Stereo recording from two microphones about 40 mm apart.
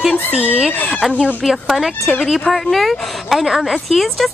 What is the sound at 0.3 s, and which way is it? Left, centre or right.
Speech, right.